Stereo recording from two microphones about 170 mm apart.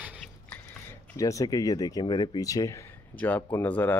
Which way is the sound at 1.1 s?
20° left (ahead or behind).